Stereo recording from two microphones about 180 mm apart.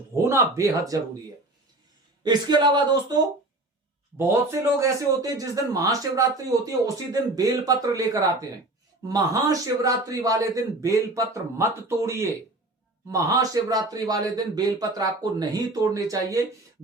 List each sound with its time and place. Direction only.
0.2 s speech: 15° right (ahead or behind)
2.2 s a man's voice: 25° right (ahead or behind)
4.2 s a man's voice: 15° right (ahead or behind)